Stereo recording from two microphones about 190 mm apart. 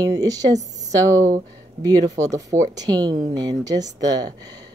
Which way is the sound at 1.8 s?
20° right (ahead or behind).